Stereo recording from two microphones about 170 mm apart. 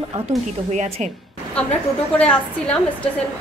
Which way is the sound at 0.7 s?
45° right (ahead or behind).